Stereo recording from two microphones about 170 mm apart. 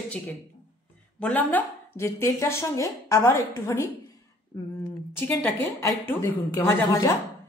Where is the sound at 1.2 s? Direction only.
10° left (ahead or behind).